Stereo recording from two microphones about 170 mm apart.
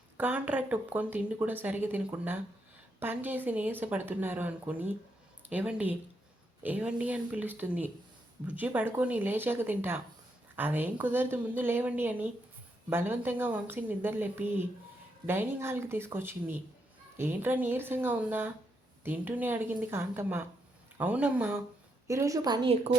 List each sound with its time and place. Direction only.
0.2 s a woman's voice: 10° right (ahead or behind)